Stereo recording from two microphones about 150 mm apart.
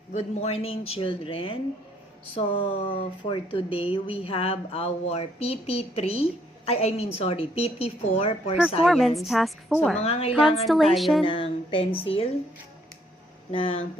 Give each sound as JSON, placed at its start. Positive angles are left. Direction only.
{"t": 0.1, "sound": "speech", "side_deg": 45}
{"t": 8.8, "sound": "a woman's voice", "side_deg": 0}
{"t": 10.0, "sound": "a woman's voice", "side_deg": 40}
{"t": 10.9, "sound": "a woman's voice", "side_deg": 0}
{"t": 11.2, "sound": "a sound", "side_deg": 35}
{"t": 12.0, "sound": "speech", "side_deg": 40}
{"t": 13.5, "sound": "speech", "side_deg": 40}